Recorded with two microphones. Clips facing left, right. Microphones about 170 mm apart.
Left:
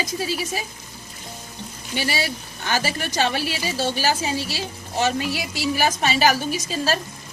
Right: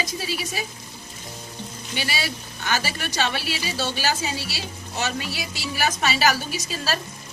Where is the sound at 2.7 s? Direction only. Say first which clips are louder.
Left 2 dB; 45° left (ahead or behind).